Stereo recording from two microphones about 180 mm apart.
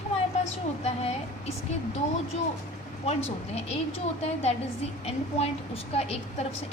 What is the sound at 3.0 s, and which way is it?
A woman's voice, 35° left (ahead or behind).